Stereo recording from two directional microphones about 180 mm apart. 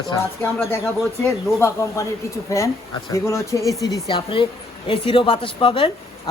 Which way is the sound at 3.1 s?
15° left (ahead or behind).